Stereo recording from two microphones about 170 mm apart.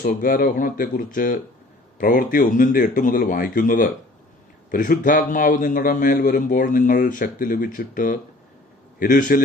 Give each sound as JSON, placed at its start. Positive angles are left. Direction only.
{"t": 0.0, "sound": "a man's voice", "side_deg": 60}